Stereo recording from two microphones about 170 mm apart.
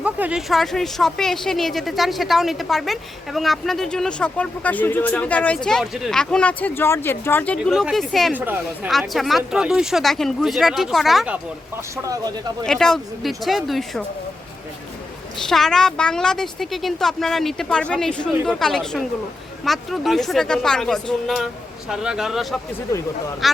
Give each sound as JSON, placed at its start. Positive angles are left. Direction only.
{"t": 0.0, "sound": "a woman's voice", "side_deg": -5}
{"t": 8.3, "sound": "speech", "side_deg": -10}
{"t": 8.9, "sound": "a woman's voice", "side_deg": 0}
{"t": 12.0, "sound": "speech", "side_deg": -20}
{"t": 12.6, "sound": "a woman's voice", "side_deg": 5}
{"t": 15.4, "sound": "a woman's voice", "side_deg": 0}